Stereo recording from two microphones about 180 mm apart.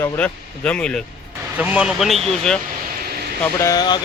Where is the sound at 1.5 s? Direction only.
5° right (ahead or behind).